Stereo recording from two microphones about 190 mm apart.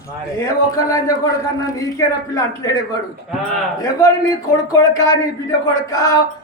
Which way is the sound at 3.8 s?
15° left (ahead or behind).